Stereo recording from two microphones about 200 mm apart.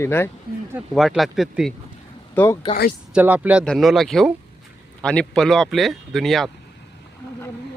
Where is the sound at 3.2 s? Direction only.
10° right (ahead or behind).